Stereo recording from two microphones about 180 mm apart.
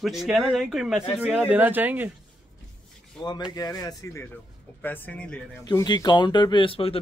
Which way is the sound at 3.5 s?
20° left (ahead or behind).